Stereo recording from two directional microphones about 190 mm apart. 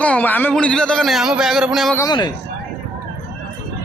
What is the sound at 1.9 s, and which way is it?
Speech, 20° left (ahead or behind).